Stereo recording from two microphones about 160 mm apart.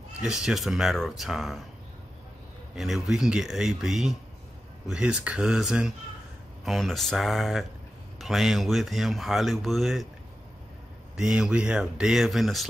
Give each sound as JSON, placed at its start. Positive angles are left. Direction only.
{"t": 0.2, "sound": "speech", "side_deg": -5}
{"t": 2.7, "sound": "speech", "side_deg": 0}
{"t": 11.1, "sound": "speech", "side_deg": -5}